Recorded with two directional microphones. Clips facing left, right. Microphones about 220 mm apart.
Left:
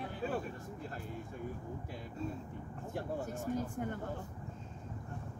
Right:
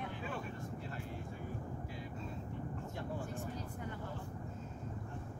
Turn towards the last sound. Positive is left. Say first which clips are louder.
# left 6 dB
turn(degrees=50)  # may be behind; listen again after turning